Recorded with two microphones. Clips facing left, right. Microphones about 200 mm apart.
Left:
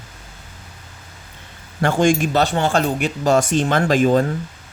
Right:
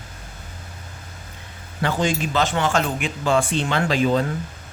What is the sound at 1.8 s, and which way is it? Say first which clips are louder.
Speech: left 6 dB; 50° left (ahead or behind).